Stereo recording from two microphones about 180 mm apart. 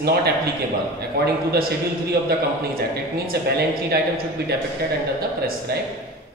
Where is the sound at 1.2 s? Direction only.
60° right (ahead or behind).